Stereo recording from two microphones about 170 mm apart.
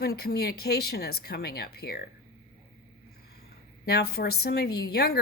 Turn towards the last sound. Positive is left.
turn(degrees=70)  # may be behind; listen again after turning